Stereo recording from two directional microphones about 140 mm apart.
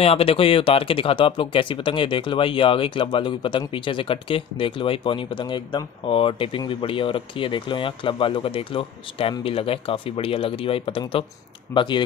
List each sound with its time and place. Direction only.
0.0 s speech: 45° left (ahead or behind)